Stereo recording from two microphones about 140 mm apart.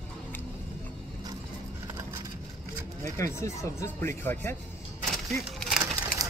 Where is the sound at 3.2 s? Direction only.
20° left (ahead or behind).